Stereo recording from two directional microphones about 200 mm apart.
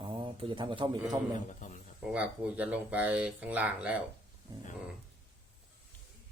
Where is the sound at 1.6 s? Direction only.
40° left (ahead or behind).